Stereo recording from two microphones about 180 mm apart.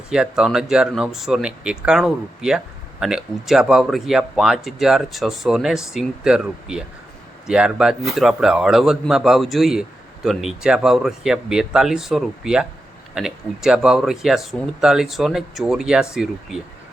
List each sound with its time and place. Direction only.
0.1 s speech: 5° right (ahead or behind)